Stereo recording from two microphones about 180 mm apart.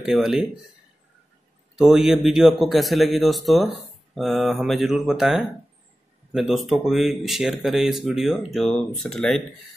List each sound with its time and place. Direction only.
0.0 s speech: centre (ahead or behind)
1.8 s speech: centre (ahead or behind)